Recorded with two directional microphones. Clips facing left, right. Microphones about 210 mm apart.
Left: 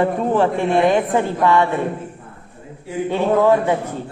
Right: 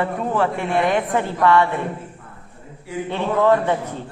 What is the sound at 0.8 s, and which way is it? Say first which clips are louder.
Speech: left 4 dB; 15° left (ahead or behind).